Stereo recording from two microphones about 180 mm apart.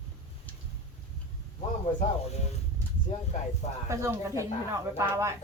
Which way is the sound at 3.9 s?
15° right (ahead or behind).